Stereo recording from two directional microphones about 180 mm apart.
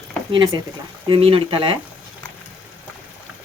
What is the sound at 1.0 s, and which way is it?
Speech, 30° right (ahead or behind).